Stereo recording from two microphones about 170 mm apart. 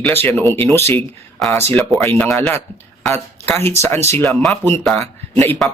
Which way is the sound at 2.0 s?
10° left (ahead or behind).